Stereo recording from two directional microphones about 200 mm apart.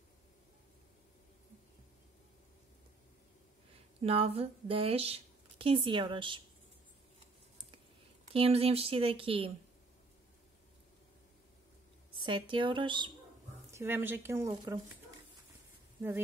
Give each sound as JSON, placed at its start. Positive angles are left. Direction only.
{"t": 4.0, "sound": "a woman's voice", "side_deg": -30}
{"t": 8.3, "sound": "speech", "side_deg": -30}
{"t": 12.2, "sound": "speech", "side_deg": -25}
{"t": 13.7, "sound": "speech", "side_deg": -10}